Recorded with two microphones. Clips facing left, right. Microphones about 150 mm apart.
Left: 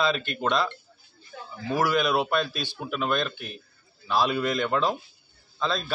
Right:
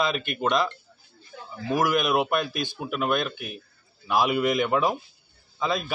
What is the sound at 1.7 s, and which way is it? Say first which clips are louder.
Speech: right 1 dB; 15° right (ahead or behind).